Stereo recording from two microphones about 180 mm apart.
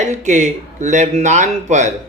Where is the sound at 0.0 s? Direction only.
40° right (ahead or behind).